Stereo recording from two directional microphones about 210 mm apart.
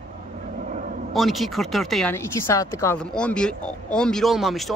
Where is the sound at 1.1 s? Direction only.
Centre (ahead or behind).